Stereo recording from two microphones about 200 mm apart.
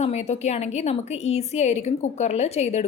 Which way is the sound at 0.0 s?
35° left (ahead or behind).